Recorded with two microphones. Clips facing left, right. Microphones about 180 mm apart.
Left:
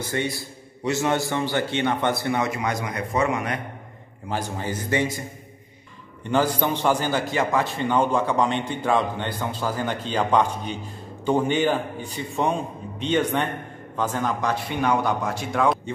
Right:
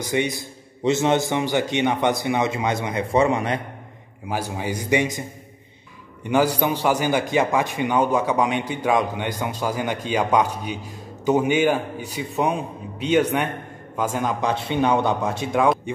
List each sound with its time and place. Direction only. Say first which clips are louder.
0.0 s a man's voice: right 3 dB; 15° right (ahead or behind)
4.3 s a man's voice: right 2 dB; 10° right (ahead or behind)
6.2 s a man's voice: right 2 dB; 10° right (ahead or behind)